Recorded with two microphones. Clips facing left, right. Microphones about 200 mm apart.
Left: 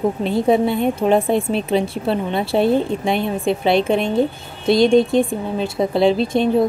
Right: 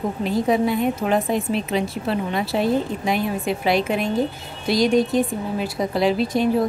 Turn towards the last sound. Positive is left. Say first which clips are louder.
# left 3 dB
turn(degrees=25)  # may be behind; listen again after turning